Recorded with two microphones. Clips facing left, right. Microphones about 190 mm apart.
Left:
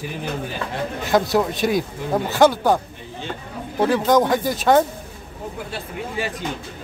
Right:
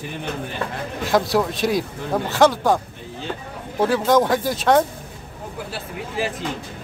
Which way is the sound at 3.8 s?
Centre (ahead or behind).